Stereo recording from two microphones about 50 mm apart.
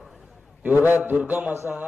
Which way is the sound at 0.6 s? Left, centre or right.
Right.